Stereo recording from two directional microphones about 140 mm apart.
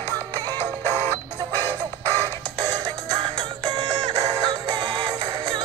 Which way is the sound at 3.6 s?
30° right (ahead or behind).